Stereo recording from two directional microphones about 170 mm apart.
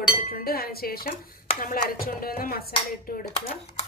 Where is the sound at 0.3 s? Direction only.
60° left (ahead or behind).